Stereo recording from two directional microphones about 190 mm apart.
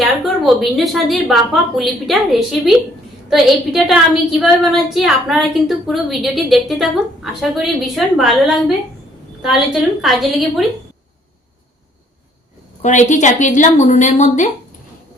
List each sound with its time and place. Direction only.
0.0 s a woman's voice: centre (ahead or behind)
12.8 s a woman's voice: 40° left (ahead or behind)